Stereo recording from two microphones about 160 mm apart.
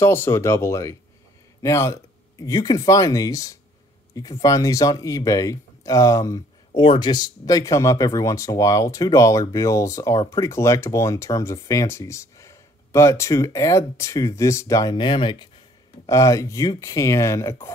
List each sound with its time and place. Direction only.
0.0 s speech: 15° left (ahead or behind)
16.1 s speech: 20° left (ahead or behind)